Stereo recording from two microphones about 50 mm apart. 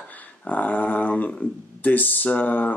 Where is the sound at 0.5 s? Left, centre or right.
Left.